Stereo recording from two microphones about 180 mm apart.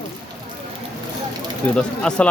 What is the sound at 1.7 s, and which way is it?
Speech, 5° left (ahead or behind).